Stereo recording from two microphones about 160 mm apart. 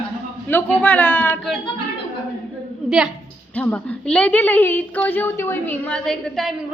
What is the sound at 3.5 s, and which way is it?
A woman's voice, 10° left (ahead or behind).